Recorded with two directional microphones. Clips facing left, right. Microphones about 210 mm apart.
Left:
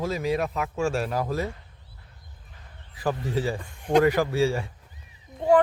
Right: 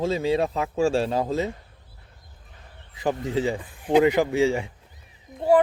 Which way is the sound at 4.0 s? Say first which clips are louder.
Right 2 dB; 20° right (ahead or behind).